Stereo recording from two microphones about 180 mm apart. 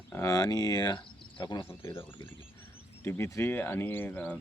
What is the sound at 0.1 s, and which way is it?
Speech, 15° left (ahead or behind).